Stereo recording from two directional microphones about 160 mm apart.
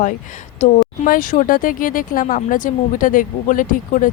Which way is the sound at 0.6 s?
55° left (ahead or behind).